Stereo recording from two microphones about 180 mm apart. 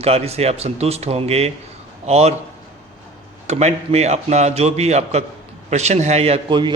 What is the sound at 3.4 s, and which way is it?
A man's voice, 35° right (ahead or behind).